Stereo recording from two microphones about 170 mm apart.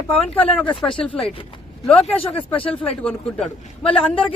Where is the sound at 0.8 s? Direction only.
5° left (ahead or behind).